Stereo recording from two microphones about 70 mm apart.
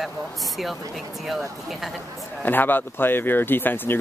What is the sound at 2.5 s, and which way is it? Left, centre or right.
Speech, left.